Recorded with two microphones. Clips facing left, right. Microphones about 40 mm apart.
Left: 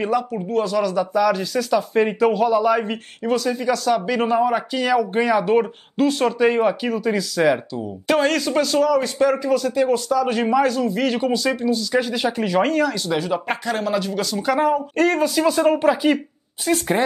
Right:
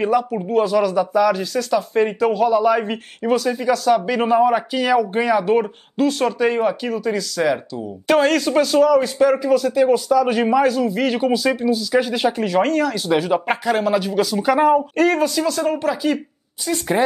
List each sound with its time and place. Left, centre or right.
0.0 s speech: centre
12.9 s speech: centre
15.4 s speech: centre